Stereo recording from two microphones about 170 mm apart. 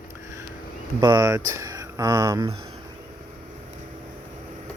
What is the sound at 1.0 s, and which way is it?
Speech, 20° right (ahead or behind).